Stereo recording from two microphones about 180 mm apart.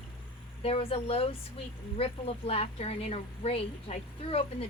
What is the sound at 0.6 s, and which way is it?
Speech, 30° left (ahead or behind).